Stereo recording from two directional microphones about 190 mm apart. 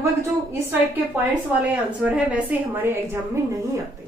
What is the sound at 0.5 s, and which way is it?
A woman's voice, 10° right (ahead or behind).